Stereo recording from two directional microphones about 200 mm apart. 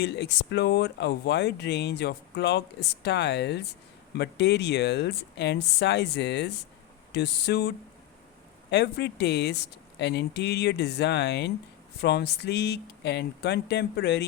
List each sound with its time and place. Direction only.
0.0 s speech: 55° left (ahead or behind)
8.7 s speech: 55° left (ahead or behind)